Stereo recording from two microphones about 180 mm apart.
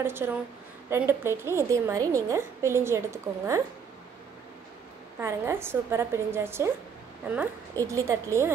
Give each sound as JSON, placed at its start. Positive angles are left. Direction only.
{"t": 0.0, "sound": "a woman's voice", "side_deg": -10}
{"t": 5.2, "sound": "a woman's voice", "side_deg": -15}
{"t": 7.7, "sound": "a woman's voice", "side_deg": -15}